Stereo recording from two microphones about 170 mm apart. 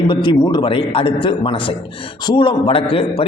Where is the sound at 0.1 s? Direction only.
30° left (ahead or behind).